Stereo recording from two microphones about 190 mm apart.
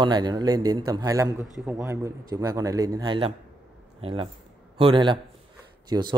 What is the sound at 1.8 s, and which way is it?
A man's voice, 15° right (ahead or behind).